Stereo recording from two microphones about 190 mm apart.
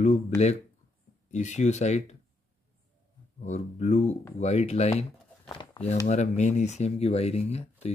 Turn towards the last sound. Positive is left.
turn(degrees=35)  # may be behind; listen again after turning